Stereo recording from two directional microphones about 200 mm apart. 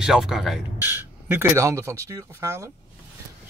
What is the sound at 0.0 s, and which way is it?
Speech, centre (ahead or behind).